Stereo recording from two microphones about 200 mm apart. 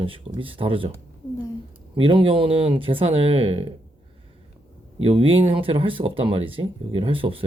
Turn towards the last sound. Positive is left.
turn(degrees=-25)  # may be behind; listen again after turning